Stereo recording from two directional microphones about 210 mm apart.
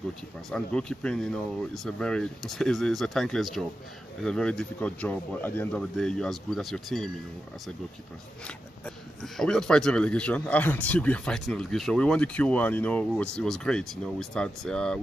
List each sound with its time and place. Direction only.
0.5 s speech: 5° left (ahead or behind)
8.5 s speech: 5° left (ahead or behind)